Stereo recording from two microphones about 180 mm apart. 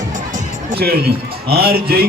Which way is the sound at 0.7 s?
60° right (ahead or behind).